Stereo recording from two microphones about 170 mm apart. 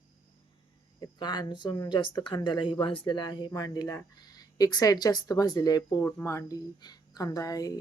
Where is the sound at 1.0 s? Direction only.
25° left (ahead or behind).